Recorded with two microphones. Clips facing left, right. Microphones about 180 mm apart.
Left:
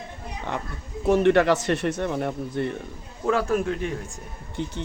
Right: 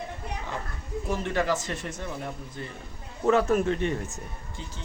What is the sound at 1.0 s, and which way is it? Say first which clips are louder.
Speech: left 10 dB; 70° left (ahead or behind).